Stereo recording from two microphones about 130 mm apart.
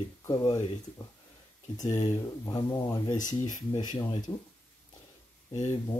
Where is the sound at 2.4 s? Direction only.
30° left (ahead or behind).